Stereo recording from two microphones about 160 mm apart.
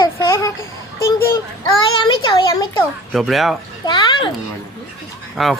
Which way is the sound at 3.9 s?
30° left (ahead or behind).